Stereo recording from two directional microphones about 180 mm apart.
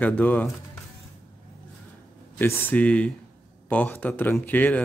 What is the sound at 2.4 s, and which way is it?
A man's voice, 10° left (ahead or behind).